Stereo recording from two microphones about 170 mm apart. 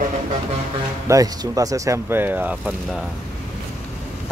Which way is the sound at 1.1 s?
20° right (ahead or behind).